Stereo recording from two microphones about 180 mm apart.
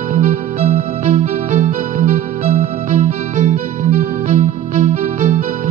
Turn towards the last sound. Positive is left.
turn(degrees=-40)  # may be behind; listen again after turning